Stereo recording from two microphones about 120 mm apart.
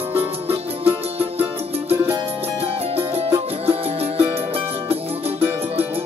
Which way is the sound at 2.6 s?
55° right (ahead or behind).